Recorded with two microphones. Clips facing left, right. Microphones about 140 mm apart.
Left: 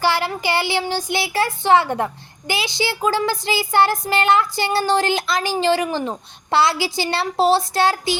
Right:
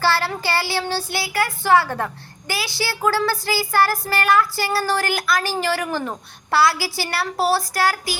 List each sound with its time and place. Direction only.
0.0 s speech: 15° left (ahead or behind)